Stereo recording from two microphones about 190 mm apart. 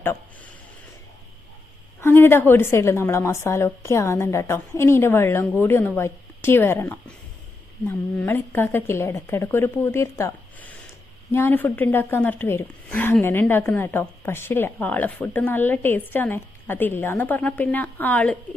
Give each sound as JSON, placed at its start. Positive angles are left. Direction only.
{"t": 2.0, "sound": "a woman's voice", "side_deg": 10}